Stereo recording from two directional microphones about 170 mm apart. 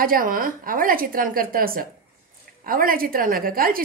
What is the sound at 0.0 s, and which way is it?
A woman's voice, 55° right (ahead or behind).